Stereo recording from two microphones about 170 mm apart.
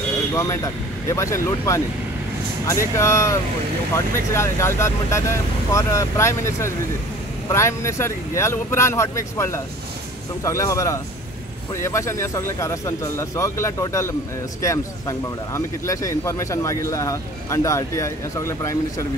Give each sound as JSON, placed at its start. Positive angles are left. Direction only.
{"t": 0.3, "sound": "speech", "side_deg": 20}